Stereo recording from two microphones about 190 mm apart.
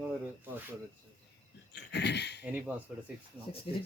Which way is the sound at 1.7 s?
60° left (ahead or behind).